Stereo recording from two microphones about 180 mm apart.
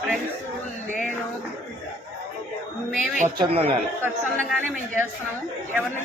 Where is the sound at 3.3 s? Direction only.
35° right (ahead or behind).